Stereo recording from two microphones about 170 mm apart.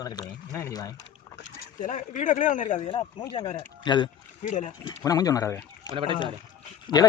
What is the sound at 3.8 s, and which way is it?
Speech, 25° left (ahead or behind).